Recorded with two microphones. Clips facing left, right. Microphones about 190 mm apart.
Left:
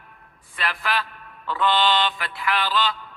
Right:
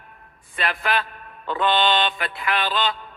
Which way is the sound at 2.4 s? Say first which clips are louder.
Left 1 dB; 20° right (ahead or behind).